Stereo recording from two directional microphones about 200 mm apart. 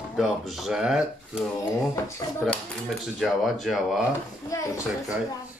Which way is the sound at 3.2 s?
Centre (ahead or behind).